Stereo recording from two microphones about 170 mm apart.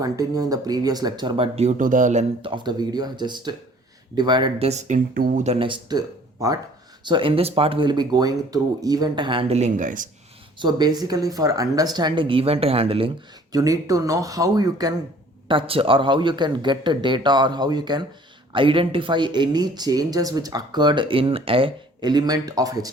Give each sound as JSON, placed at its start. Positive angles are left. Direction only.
{"t": 0.0, "sound": "speech", "side_deg": -20}
{"t": 1.5, "sound": "speech", "side_deg": -45}
{"t": 2.4, "sound": "speech", "side_deg": -30}
{"t": 4.7, "sound": "speech", "side_deg": -45}
{"t": 10.6, "sound": "speech", "side_deg": -25}
{"t": 13.5, "sound": "speech", "side_deg": -20}